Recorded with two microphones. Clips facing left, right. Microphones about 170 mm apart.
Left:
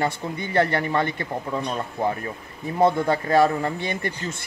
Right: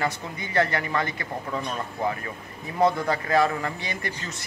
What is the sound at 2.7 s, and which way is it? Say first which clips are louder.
Speech: left 3 dB; 25° left (ahead or behind).